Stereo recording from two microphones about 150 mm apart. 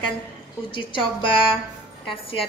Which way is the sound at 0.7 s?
35° left (ahead or behind).